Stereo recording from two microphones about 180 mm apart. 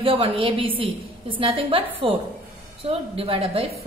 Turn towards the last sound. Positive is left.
turn(degrees=-30)  # may be behind; listen again after turning